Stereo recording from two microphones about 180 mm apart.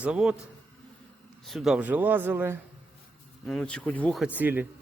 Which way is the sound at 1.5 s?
Centre (ahead or behind).